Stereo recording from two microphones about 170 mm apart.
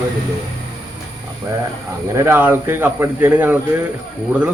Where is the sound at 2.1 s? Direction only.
15° right (ahead or behind).